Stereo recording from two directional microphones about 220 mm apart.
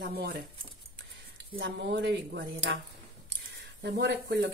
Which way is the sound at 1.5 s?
55° right (ahead or behind).